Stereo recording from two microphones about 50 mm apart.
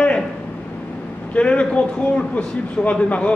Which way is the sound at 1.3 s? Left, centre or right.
Left.